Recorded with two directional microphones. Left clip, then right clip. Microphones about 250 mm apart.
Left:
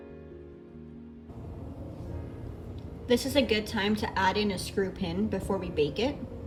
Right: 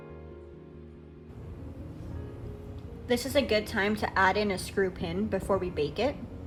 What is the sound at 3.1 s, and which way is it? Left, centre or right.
A woman's voice, centre.